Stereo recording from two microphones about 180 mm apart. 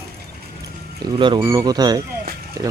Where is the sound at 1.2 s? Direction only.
20° right (ahead or behind).